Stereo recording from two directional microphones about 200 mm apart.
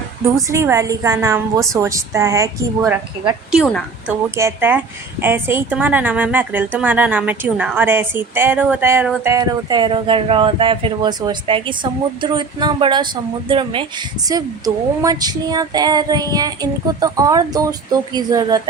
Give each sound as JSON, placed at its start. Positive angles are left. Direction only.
{"t": 0.5, "sound": "a woman's voice", "side_deg": -15}
{"t": 3.5, "sound": "a woman's voice", "side_deg": 0}
{"t": 4.1, "sound": "a woman's voice", "side_deg": -10}